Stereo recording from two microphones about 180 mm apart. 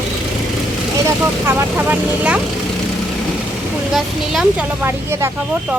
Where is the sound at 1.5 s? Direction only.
10° right (ahead or behind).